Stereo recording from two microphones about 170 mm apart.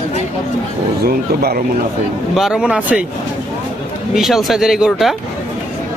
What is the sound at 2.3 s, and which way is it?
Speech, 5° right (ahead or behind).